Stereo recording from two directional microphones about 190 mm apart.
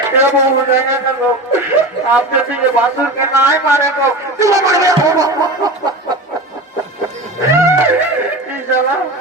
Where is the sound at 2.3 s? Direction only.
10° right (ahead or behind).